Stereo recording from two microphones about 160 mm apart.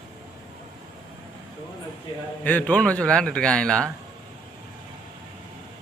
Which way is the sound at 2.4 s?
10° left (ahead or behind).